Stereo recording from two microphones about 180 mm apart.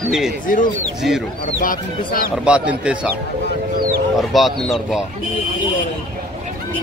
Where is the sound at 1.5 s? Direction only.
50° left (ahead or behind).